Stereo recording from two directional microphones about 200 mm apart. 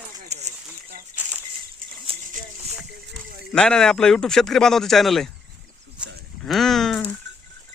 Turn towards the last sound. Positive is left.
turn(degrees=0)  # may be behind; listen again after turning